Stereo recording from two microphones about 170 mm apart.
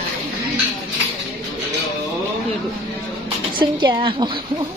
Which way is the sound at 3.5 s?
30° right (ahead or behind).